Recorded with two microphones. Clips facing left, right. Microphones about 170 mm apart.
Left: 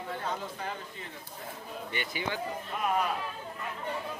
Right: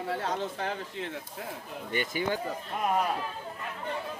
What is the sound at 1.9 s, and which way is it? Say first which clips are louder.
Speech: right 6 dB; 45° right (ahead or behind).